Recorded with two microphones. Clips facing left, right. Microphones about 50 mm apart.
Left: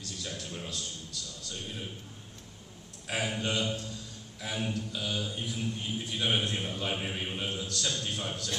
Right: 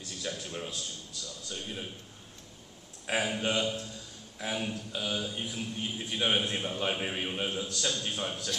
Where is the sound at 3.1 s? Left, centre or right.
Centre.